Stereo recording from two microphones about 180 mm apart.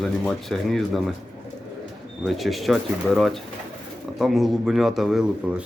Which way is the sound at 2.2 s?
Centre (ahead or behind).